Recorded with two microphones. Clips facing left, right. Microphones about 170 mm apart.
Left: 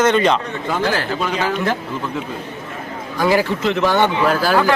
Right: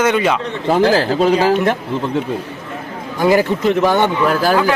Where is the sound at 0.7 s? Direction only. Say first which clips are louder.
Right 7 dB; 35° right (ahead or behind).